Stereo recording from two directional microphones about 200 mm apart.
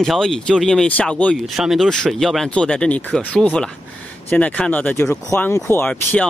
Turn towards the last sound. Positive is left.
turn(degrees=10)  # may be behind; listen again after turning